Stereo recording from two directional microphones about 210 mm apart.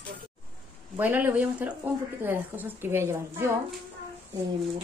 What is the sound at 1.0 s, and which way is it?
Speech, 10° right (ahead or behind).